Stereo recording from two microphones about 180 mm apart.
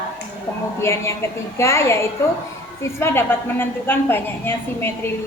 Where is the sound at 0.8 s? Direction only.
15° left (ahead or behind).